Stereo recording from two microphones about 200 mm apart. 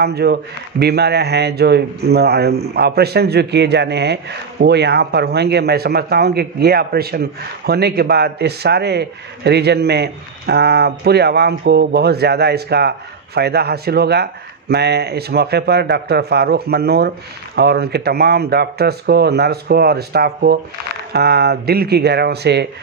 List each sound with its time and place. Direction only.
0.0 s a man's voice: 55° right (ahead or behind)